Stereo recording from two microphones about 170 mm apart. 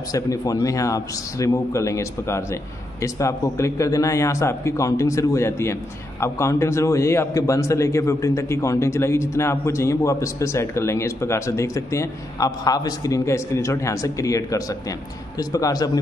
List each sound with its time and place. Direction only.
0.1 s a man's voice: 20° left (ahead or behind)